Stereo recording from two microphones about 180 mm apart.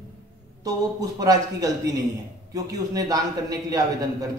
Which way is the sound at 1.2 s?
20° right (ahead or behind).